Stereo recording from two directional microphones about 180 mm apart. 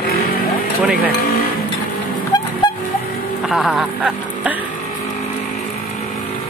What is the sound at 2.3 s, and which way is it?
Vehicle, 20° left (ahead or behind).